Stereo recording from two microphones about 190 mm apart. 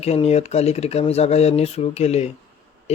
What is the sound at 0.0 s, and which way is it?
Speech, 35° left (ahead or behind).